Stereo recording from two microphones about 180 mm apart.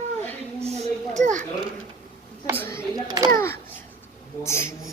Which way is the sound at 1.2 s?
40° right (ahead or behind).